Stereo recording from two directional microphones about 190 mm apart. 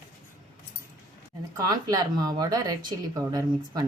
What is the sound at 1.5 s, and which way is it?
Speech, 20° right (ahead or behind).